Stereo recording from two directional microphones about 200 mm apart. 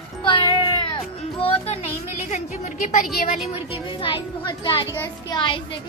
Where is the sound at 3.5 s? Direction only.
25° left (ahead or behind).